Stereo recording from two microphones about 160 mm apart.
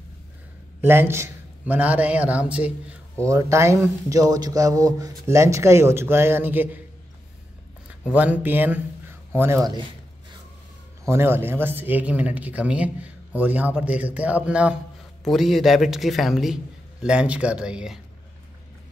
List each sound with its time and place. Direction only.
0.7 s a man's voice: 15° right (ahead or behind)
3.3 s speech: 20° right (ahead or behind)
8.1 s speech: 10° right (ahead or behind)
11.1 s speech: 15° right (ahead or behind)